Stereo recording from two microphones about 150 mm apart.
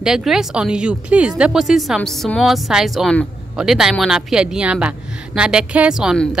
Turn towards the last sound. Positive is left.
turn(degrees=-5)  # may be behind; listen again after turning